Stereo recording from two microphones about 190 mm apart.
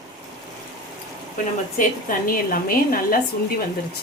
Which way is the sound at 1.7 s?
50° left (ahead or behind).